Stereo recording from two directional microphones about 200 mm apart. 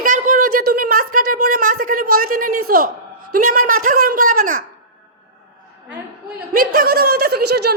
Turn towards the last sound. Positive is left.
turn(degrees=-50)  # may be behind; listen again after turning